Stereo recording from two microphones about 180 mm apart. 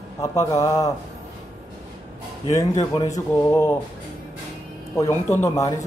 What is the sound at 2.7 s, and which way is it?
Speech, 20° left (ahead or behind).